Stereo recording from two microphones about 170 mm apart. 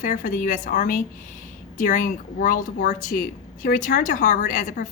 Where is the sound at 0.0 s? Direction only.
50° left (ahead or behind).